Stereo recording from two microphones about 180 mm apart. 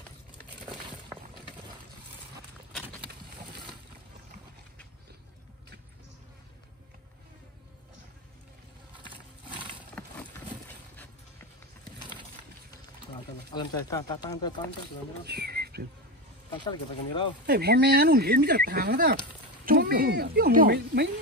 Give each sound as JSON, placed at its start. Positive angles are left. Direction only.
{"t": 10.0, "sound": "horse", "side_deg": 5}
{"t": 13.5, "sound": "speech", "side_deg": 25}
{"t": 15.2, "sound": "a sound", "side_deg": -65}
{"t": 16.6, "sound": "speech", "side_deg": 25}
{"t": 17.5, "sound": "speech", "side_deg": -65}